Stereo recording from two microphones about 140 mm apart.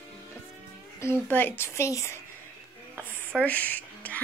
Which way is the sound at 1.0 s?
15° left (ahead or behind).